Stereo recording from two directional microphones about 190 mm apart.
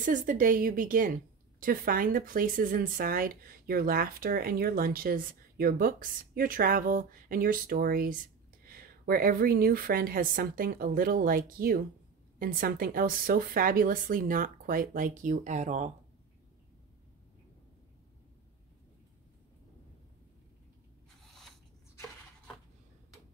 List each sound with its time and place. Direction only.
0.0 s speech: 45° right (ahead or behind)